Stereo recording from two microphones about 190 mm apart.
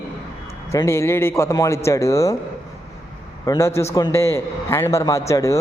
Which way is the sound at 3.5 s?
15° left (ahead or behind).